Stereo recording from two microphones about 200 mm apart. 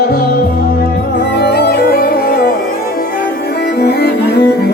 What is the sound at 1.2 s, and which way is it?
Music, 55° left (ahead or behind).